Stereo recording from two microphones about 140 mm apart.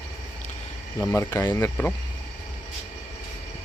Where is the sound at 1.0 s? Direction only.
25° left (ahead or behind).